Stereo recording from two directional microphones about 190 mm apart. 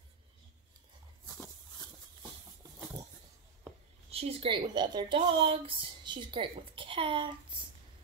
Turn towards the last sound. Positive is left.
turn(degrees=-25)  # may be behind; listen again after turning